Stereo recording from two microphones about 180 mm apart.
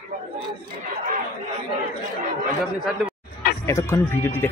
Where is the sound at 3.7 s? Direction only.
15° left (ahead or behind).